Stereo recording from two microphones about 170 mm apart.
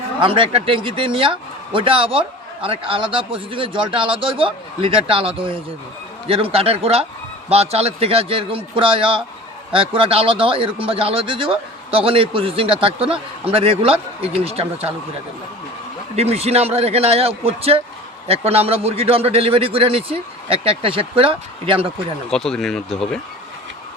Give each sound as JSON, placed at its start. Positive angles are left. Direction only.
{"t": 0.2, "sound": "speech", "side_deg": -30}
{"t": 16.1, "sound": "speech", "side_deg": -35}
{"t": 22.3, "sound": "speech", "side_deg": 5}